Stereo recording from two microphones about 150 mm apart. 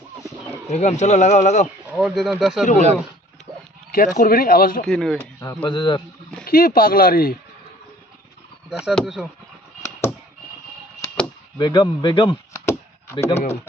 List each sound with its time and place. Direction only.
0.7 s speech: 45° left (ahead or behind)
1.9 s speech: 5° right (ahead or behind)
3.9 s speech: 65° left (ahead or behind)
4.8 s speech: 5° left (ahead or behind)
5.6 s speech: 30° left (ahead or behind)
6.4 s speech: 75° left (ahead or behind)
8.6 s speech: 5° right (ahead or behind)
11.5 s speech: 30° left (ahead or behind)
13.2 s speech: 45° left (ahead or behind)